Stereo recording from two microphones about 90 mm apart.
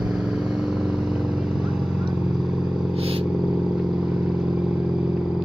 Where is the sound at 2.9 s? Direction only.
90° right.